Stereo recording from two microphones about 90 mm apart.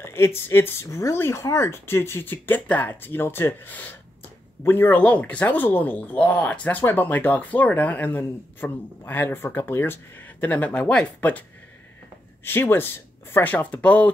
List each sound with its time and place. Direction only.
0.0 s speech: 30° left (ahead or behind)
12.4 s speech: 25° left (ahead or behind)